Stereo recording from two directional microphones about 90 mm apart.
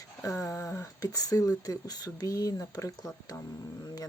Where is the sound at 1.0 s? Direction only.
45° left (ahead or behind).